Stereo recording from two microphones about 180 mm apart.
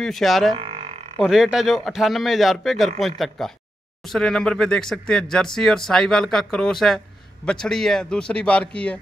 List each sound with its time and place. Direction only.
0.0 s speech: centre (ahead or behind)
0.6 s a sound: 30° right (ahead or behind)
1.2 s speech: 5° right (ahead or behind)